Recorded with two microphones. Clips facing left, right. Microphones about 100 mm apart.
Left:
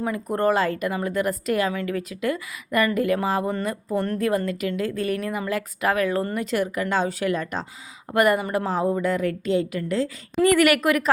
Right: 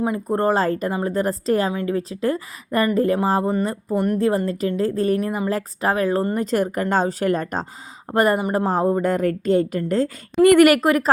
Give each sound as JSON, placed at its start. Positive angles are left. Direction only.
{"t": 0.0, "sound": "a woman's voice", "side_deg": -25}
{"t": 3.9, "sound": "speech", "side_deg": -15}
{"t": 4.2, "sound": "a woman's voice", "side_deg": -30}
{"t": 8.1, "sound": "a woman's voice", "side_deg": -30}